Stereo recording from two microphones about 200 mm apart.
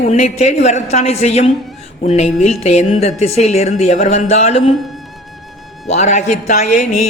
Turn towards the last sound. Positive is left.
turn(degrees=35)  # may be behind; listen again after turning